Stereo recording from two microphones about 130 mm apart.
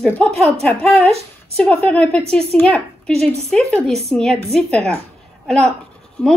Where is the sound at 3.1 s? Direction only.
55° right (ahead or behind).